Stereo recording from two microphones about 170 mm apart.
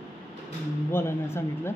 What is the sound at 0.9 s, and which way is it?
Speech, 15° left (ahead or behind).